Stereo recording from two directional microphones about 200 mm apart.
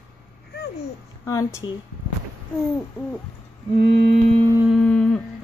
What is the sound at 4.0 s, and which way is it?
Music, 40° right (ahead or behind).